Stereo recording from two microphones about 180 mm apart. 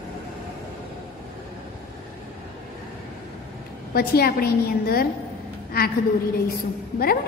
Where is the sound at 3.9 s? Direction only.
60° left (ahead or behind).